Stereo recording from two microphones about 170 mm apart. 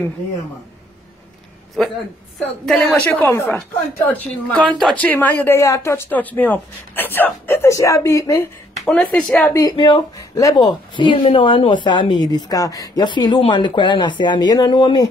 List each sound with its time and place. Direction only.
2.3 s a woman's voice: centre (ahead or behind)
2.9 s a woman's voice: 15° left (ahead or behind)
8.7 s a woman's voice: 5° left (ahead or behind)
9.6 s a woman's voice: 25° left (ahead or behind)